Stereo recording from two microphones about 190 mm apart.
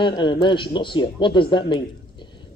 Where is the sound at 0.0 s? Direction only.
25° left (ahead or behind).